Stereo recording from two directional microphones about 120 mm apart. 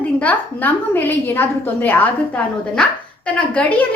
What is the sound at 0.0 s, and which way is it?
A woman's voice, 10° left (ahead or behind).